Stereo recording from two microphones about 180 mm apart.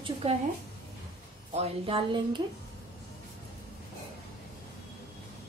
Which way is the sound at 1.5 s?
35° right (ahead or behind).